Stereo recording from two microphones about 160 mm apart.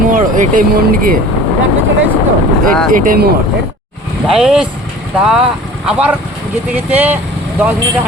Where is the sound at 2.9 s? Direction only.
70° right (ahead or behind).